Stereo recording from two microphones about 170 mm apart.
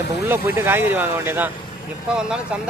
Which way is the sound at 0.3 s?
15° right (ahead or behind).